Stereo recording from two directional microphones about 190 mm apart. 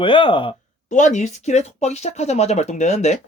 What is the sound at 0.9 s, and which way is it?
Speech, 40° left (ahead or behind).